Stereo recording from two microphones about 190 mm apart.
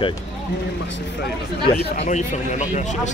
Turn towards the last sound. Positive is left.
turn(degrees=40)  # may be behind; listen again after turning